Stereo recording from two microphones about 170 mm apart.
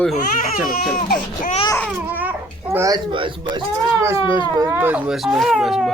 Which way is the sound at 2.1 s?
10° right (ahead or behind).